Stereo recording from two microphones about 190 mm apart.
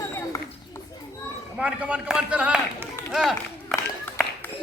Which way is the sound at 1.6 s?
5° right (ahead or behind).